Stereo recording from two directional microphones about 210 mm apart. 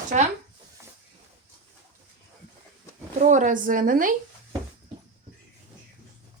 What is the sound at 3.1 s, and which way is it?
A woman's voice, 35° right (ahead or behind).